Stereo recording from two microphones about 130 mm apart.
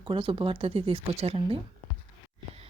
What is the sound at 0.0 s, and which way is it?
Speech, 40° right (ahead or behind).